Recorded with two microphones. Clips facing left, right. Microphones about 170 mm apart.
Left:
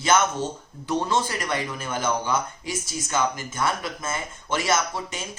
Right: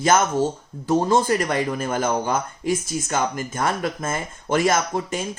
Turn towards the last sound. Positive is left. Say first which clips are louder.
# right 3 dB
turn(degrees=-50)  # may be behind; listen again after turning